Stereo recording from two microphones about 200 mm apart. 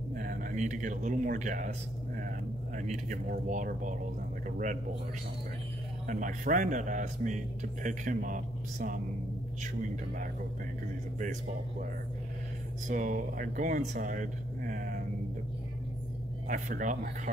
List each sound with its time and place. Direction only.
0.1 s speech: 45° right (ahead or behind)
2.8 s speech: 40° right (ahead or behind)
6.0 s speech: 40° right (ahead or behind)
12.8 s speech: 40° right (ahead or behind)
16.4 s speech: 40° right (ahead or behind)